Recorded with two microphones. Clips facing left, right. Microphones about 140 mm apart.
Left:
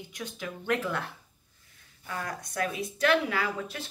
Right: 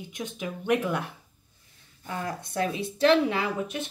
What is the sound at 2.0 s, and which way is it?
Speech, 30° right (ahead or behind).